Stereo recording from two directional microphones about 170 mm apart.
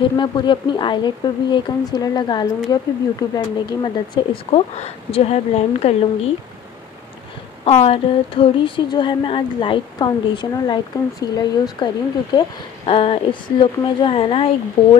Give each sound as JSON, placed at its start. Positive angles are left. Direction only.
{"t": 0.0, "sound": "speech", "side_deg": 30}
{"t": 7.6, "sound": "speech", "side_deg": 35}